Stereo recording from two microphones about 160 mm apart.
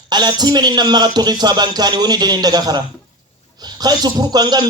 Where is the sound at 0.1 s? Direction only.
25° right (ahead or behind).